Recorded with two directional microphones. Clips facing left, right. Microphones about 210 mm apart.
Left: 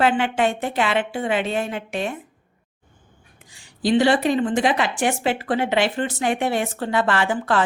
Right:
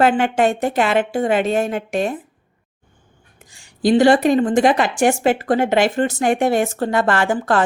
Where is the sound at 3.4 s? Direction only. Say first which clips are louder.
Right 6 dB; 45° right (ahead or behind).